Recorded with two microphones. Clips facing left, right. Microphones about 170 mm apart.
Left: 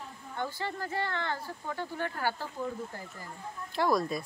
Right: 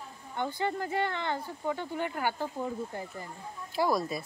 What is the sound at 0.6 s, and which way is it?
Speech, 20° right (ahead or behind).